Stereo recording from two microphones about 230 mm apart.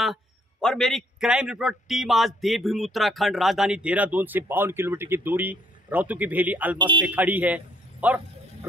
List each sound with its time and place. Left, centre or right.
0.0 s a man's voice: centre
6.8 s speech: centre
7.1 s a man's voice: centre